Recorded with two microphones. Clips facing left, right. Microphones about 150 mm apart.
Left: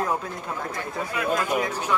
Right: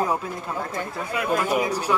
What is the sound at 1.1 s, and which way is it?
Speech, 25° right (ahead or behind).